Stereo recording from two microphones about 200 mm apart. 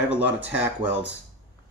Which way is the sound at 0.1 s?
10° right (ahead or behind).